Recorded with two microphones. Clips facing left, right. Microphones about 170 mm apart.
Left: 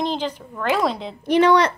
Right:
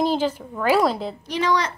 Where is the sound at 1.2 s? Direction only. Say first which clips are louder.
Left 8 dB; 60° left (ahead or behind).